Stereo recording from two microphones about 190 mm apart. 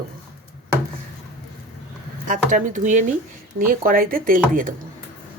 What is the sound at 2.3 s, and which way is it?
Speech, 40° right (ahead or behind).